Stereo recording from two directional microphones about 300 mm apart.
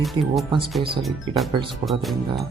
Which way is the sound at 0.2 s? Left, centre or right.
Centre.